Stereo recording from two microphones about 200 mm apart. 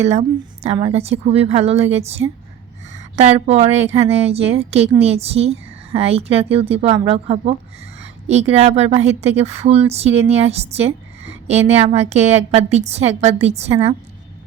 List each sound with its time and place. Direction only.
0.1 s a woman's voice: 35° right (ahead or behind)